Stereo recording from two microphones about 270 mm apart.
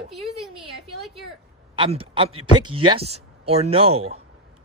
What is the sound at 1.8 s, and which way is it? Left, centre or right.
Speech, centre.